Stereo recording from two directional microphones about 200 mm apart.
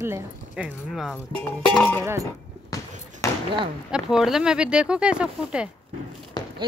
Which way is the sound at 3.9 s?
5° right (ahead or behind).